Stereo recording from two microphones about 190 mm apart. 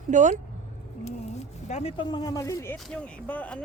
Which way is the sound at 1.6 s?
35° left (ahead or behind).